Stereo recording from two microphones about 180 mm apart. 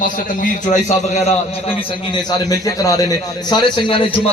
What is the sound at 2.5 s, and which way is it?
Speech, 20° left (ahead or behind).